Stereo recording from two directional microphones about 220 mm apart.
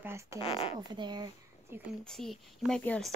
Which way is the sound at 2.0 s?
Centre (ahead or behind).